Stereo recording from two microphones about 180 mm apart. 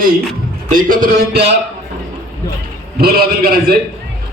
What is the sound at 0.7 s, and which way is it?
Speech, 50° right (ahead or behind).